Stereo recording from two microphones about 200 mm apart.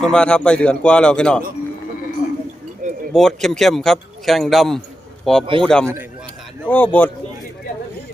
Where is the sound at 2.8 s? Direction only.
40° right (ahead or behind).